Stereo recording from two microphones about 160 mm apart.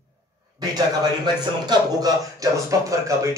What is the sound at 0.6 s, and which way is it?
Speech, 25° right (ahead or behind).